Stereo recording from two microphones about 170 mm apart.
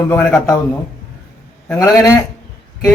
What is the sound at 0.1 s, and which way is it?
Speech, 10° left (ahead or behind).